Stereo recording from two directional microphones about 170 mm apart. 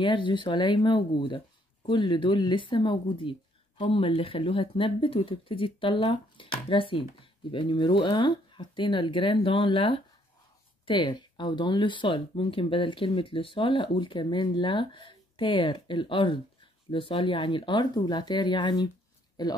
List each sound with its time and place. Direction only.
0.0 s speech: 30° left (ahead or behind)